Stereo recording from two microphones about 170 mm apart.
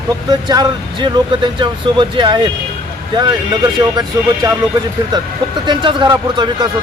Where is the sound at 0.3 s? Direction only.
25° right (ahead or behind).